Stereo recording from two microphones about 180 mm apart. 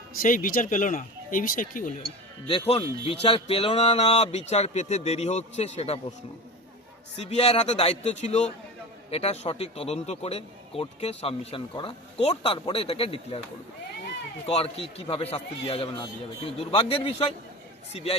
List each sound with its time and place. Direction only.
0.2 s speech: 50° left (ahead or behind)
2.5 s speech: 30° left (ahead or behind)
7.2 s speech: 35° left (ahead or behind)
14.4 s speech: 35° left (ahead or behind)